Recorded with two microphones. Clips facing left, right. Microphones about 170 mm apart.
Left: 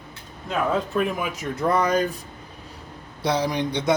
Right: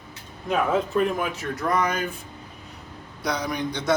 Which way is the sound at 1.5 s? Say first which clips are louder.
Left 4 dB; 30° left (ahead or behind).